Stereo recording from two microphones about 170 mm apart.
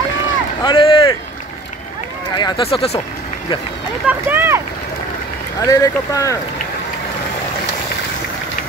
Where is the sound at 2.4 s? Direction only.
35° left (ahead or behind).